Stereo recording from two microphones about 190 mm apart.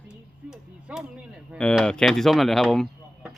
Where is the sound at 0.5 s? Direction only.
5° right (ahead or behind).